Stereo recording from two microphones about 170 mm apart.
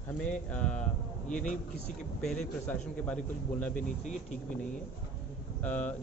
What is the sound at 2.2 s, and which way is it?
Speech, 5° left (ahead or behind).